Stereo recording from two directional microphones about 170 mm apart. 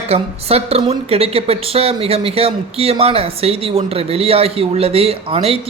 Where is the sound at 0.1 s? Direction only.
35° right (ahead or behind).